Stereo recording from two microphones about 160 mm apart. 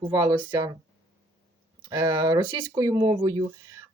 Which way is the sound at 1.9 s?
20° right (ahead or behind).